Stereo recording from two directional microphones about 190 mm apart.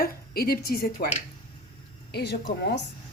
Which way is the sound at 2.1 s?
60° left (ahead or behind).